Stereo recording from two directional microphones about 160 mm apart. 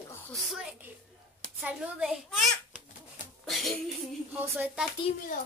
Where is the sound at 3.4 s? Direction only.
Centre (ahead or behind).